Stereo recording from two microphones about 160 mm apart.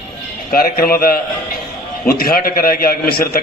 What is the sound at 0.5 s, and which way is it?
A man's voice, 65° left (ahead or behind).